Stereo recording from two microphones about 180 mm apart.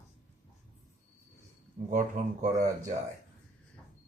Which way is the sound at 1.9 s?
45° right (ahead or behind).